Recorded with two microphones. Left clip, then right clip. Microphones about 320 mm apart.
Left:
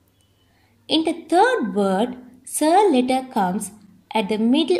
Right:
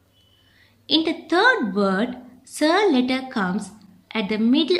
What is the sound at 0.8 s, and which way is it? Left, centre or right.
A woman's voice, centre.